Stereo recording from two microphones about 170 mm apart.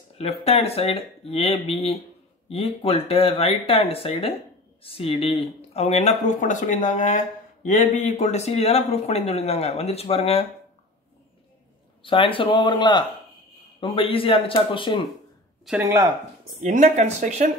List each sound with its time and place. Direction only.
0.2 s speech: 35° left (ahead or behind)
12.0 s speech: 30° left (ahead or behind)
15.8 s speech: 15° right (ahead or behind)
16.6 s speech: 45° right (ahead or behind)